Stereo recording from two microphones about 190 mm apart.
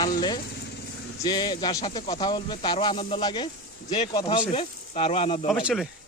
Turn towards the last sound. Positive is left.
turn(degrees=-5)  # may be behind; listen again after turning